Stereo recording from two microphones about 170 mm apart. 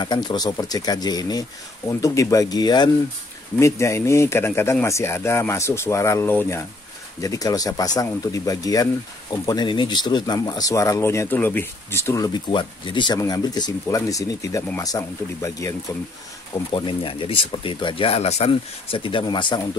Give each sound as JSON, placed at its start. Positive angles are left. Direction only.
{"t": 0.0, "sound": "speech", "side_deg": 25}
{"t": 16.5, "sound": "speech", "side_deg": 30}